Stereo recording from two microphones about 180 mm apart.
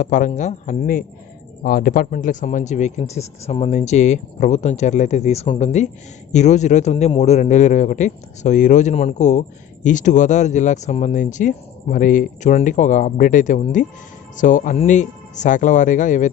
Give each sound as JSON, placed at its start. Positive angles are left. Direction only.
{"t": 0.0, "sound": "speech", "side_deg": 45}